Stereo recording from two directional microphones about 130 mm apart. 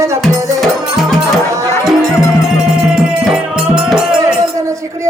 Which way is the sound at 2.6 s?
5° right (ahead or behind).